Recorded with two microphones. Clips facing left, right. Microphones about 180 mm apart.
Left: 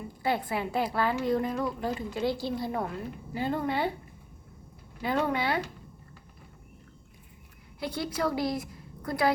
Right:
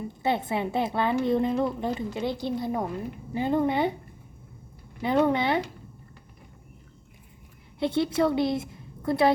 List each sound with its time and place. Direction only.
0.1 s a woman's voice: 25° right (ahead or behind)
5.0 s a woman's voice: 20° right (ahead or behind)
7.8 s a woman's voice: 25° right (ahead or behind)